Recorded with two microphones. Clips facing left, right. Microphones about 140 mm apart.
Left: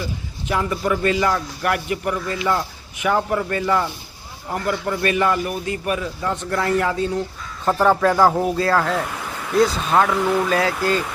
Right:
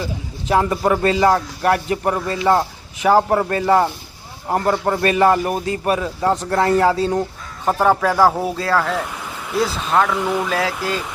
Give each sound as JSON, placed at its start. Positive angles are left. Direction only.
{"t": 0.4, "sound": "a man's voice", "side_deg": -35}
{"t": 7.6, "sound": "a man's voice", "side_deg": -15}
{"t": 10.2, "sound": "a man's voice", "side_deg": -10}